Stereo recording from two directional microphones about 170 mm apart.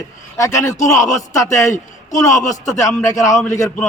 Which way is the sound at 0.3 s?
15° left (ahead or behind).